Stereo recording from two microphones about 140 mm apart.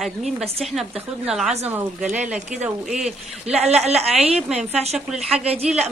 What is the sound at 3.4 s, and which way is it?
Speech, 50° right (ahead or behind).